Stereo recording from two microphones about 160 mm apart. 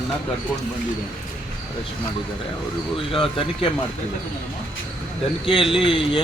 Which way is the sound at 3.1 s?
35° left (ahead or behind).